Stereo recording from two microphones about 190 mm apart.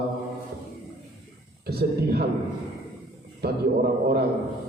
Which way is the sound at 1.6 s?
55° right (ahead or behind).